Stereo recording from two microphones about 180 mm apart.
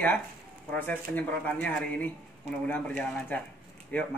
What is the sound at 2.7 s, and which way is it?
Speech, 5° left (ahead or behind).